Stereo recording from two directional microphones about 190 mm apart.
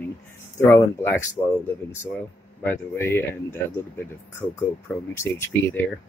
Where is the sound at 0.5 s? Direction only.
15° left (ahead or behind).